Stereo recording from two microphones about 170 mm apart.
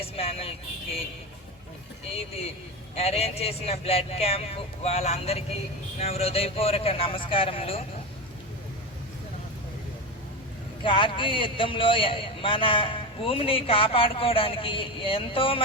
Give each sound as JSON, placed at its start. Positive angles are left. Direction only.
{"t": 0.0, "sound": "vehicle", "side_deg": 35}
{"t": 2.1, "sound": "a man's voice", "side_deg": 35}
{"t": 10.8, "sound": "a man's voice", "side_deg": 30}